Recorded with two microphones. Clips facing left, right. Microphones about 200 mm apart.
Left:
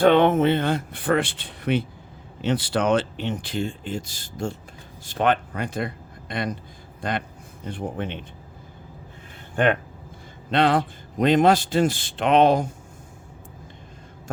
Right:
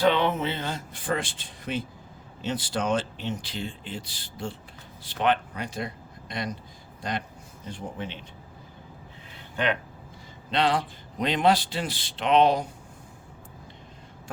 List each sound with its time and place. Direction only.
0.0 s speech: 50° left (ahead or behind)
9.6 s a man's voice: 50° left (ahead or behind)